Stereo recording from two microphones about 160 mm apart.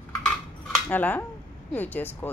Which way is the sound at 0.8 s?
10° left (ahead or behind).